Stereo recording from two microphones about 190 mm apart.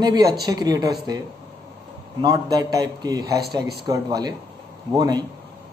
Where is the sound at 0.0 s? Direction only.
20° right (ahead or behind).